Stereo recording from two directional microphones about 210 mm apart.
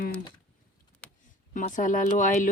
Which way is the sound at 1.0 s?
5° left (ahead or behind).